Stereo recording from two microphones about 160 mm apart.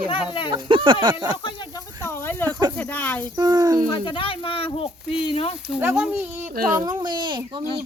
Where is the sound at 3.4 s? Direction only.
25° right (ahead or behind).